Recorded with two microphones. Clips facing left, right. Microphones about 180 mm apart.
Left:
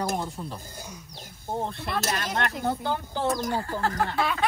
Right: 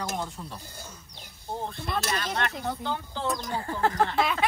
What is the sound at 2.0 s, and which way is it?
Speech, 45° left (ahead or behind).